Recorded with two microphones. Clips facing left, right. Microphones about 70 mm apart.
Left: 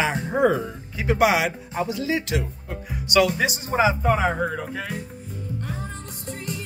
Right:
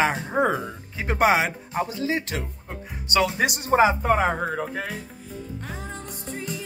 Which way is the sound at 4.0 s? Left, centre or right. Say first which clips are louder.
Even; right.